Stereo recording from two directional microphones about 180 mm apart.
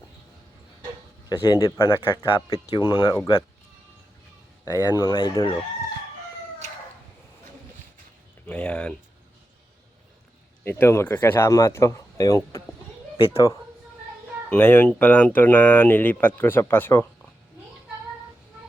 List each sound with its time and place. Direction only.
1.3 s speech: 20° left (ahead or behind)
2.0 s speech: 30° left (ahead or behind)
4.6 s speech: 15° left (ahead or behind)
8.4 s speech: 5° left (ahead or behind)
10.6 s speech: 10° left (ahead or behind)
14.5 s speech: 10° left (ahead or behind)